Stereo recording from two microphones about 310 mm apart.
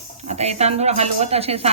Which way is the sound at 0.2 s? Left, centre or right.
Right.